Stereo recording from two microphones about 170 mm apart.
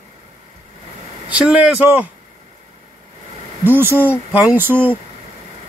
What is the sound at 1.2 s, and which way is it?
Speech, 5° right (ahead or behind).